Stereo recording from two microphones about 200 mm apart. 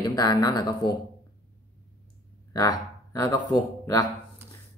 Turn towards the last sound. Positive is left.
turn(degrees=15)  # may be behind; listen again after turning